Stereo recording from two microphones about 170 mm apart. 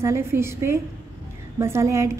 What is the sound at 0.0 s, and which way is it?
A woman's voice, 15° right (ahead or behind).